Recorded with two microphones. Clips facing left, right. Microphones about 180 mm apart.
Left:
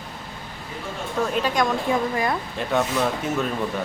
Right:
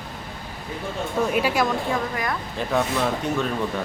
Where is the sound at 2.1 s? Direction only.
25° left (ahead or behind).